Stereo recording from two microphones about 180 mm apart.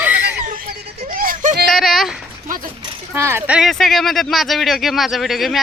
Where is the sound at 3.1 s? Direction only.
15° right (ahead or behind).